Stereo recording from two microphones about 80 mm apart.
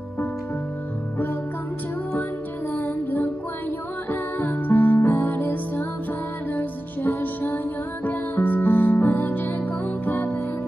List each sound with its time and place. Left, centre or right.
2.7 s music: left